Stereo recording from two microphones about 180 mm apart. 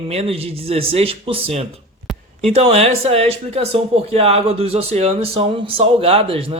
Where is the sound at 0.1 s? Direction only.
35° right (ahead or behind).